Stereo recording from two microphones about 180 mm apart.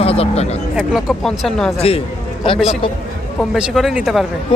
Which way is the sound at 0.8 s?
5° right (ahead or behind).